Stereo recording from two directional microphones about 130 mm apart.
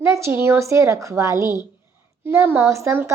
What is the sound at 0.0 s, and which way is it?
A woman's voice, 20° right (ahead or behind).